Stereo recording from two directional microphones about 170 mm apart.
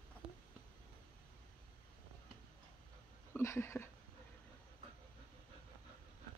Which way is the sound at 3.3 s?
15° left (ahead or behind).